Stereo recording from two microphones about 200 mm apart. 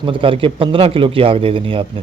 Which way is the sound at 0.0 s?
25° right (ahead or behind).